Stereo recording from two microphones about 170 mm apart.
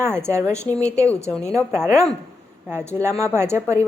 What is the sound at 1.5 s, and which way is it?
A woman's voice, 15° right (ahead or behind).